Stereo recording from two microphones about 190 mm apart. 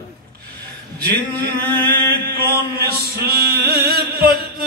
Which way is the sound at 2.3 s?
55° right (ahead or behind).